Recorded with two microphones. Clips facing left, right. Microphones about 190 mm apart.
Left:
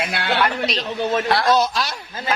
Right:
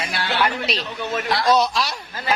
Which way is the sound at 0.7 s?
35° left (ahead or behind).